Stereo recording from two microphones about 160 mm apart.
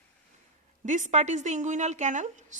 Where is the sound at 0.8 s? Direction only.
50° right (ahead or behind).